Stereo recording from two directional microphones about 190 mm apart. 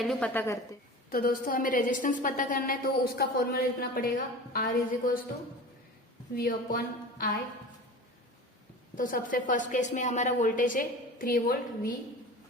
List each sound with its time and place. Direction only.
0.0 s a woman's voice: 5° left (ahead or behind)
1.1 s a woman's voice: 50° left (ahead or behind)
6.3 s a woman's voice: 50° left (ahead or behind)
9.0 s a woman's voice: 45° left (ahead or behind)